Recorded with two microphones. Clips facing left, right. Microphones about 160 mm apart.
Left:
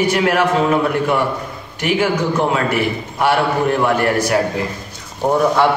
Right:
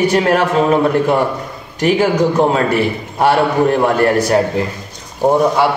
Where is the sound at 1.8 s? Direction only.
35° right (ahead or behind).